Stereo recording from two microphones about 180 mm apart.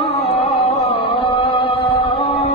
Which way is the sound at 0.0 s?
35° left (ahead or behind).